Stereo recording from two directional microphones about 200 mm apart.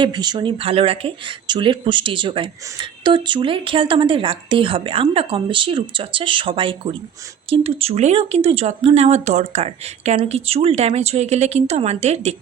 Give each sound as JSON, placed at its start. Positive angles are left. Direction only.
{"t": 0.0, "sound": "speech", "side_deg": -20}